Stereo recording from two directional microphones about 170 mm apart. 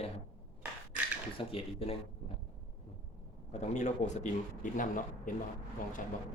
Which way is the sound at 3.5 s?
45° left (ahead or behind).